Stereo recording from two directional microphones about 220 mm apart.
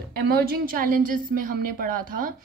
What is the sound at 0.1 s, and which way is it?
A woman's voice, 45° right (ahead or behind).